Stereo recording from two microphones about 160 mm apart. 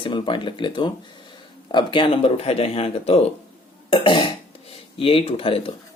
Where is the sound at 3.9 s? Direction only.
30° left (ahead or behind).